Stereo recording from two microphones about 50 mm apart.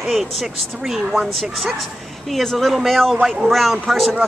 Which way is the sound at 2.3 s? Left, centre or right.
Centre.